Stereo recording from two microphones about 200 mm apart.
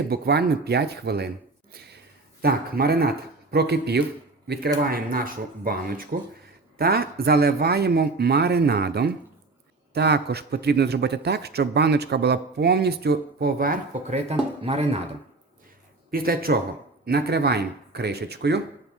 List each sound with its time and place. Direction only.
0.1 s speech: 50° right (ahead or behind)
2.4 s speech: 50° right (ahead or behind)
14.1 s speech: 30° right (ahead or behind)
16.1 s speech: 50° right (ahead or behind)